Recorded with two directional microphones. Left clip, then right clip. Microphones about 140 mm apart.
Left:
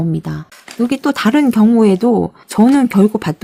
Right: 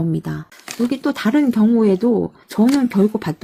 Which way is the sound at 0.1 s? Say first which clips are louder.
Left 2 dB; 25° left (ahead or behind).